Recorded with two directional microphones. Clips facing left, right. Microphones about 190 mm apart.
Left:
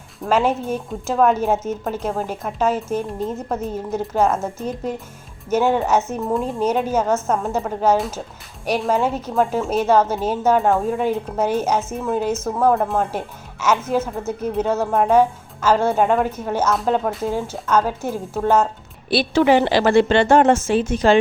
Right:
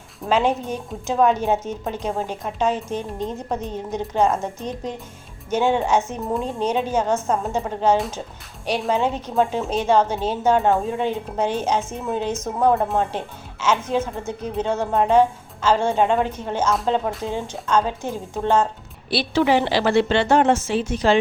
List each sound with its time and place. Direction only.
0.3 s a woman's voice: 5° left (ahead or behind)
12.3 s speech: 15° right (ahead or behind)
12.6 s a woman's voice: centre (ahead or behind)
19.1 s a woman's voice: 50° left (ahead or behind)